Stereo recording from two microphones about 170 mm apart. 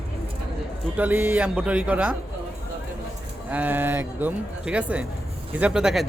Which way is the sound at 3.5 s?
10° right (ahead or behind).